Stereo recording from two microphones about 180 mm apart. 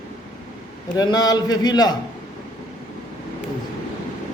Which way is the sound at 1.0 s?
20° left (ahead or behind).